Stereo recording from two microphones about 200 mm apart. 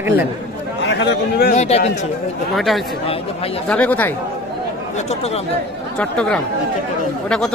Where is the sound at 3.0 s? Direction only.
30° left (ahead or behind).